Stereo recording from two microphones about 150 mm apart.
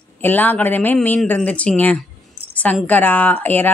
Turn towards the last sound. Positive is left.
turn(degrees=10)  # may be behind; listen again after turning